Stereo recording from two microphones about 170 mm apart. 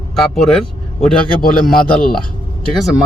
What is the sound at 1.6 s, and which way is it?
Speech, 60° left (ahead or behind).